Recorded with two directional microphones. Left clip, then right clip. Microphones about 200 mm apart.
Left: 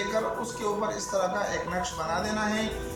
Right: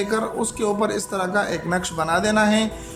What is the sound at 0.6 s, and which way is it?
Speech, 60° right (ahead or behind).